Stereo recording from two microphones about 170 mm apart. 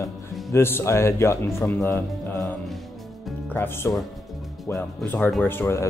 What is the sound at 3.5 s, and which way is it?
Speech, 15° left (ahead or behind).